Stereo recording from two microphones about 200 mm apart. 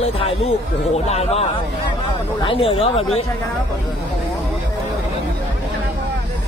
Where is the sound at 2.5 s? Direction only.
25° left (ahead or behind).